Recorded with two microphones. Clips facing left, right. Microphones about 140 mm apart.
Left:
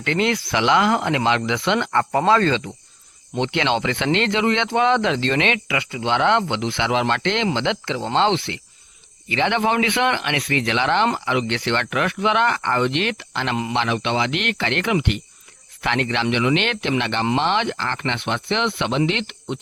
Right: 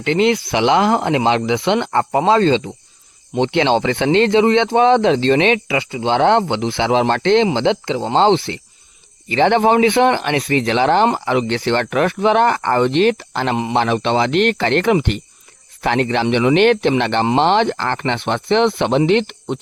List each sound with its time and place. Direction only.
0.0 s speech: 30° right (ahead or behind)